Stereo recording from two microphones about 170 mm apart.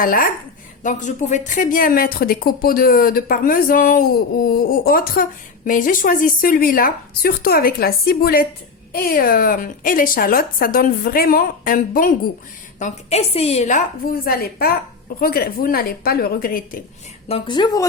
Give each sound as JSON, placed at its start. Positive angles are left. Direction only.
{"t": 0.0, "sound": "speech", "side_deg": 55}
{"t": 12.8, "sound": "a woman's voice", "side_deg": 40}
{"t": 17.2, "sound": "a woman's voice", "side_deg": 30}